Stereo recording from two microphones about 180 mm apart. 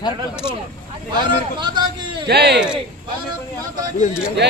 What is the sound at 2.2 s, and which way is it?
Speech, 65° right (ahead or behind).